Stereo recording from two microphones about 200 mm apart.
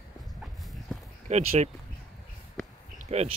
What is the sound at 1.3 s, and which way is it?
Speech, 35° right (ahead or behind).